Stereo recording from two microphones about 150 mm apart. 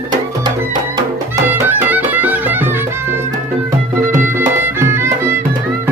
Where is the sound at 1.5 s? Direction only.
15° right (ahead or behind).